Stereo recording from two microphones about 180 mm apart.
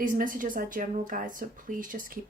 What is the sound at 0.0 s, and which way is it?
Speech, 50° right (ahead or behind).